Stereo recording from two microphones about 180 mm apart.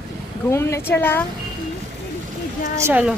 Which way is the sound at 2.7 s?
10° right (ahead or behind).